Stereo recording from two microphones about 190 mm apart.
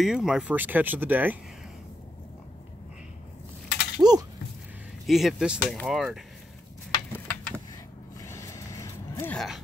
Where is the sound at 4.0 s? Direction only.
20° right (ahead or behind).